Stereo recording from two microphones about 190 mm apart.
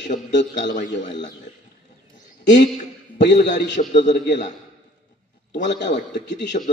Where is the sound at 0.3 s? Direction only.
65° left (ahead or behind).